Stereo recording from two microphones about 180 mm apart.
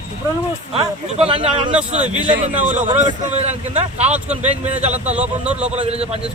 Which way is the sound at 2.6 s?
45° right (ahead or behind).